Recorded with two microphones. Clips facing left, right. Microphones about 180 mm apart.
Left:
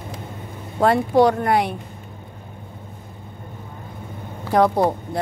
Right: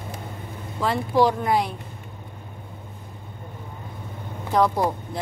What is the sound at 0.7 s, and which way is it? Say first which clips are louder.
Speech: left 5 dB; 60° left (ahead or behind).